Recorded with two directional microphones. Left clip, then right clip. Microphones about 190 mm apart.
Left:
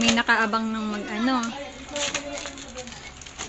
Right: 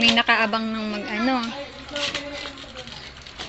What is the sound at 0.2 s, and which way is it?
Speech, centre (ahead or behind).